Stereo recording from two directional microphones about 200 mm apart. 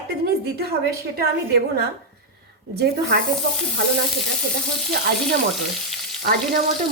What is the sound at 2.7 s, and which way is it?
Speech, 55° right (ahead or behind).